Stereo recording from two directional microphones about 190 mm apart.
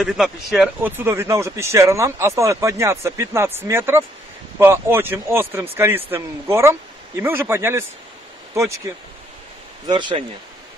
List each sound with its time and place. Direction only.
0.0 s speech: centre (ahead or behind); by 10.2 s 25° right (ahead or behind)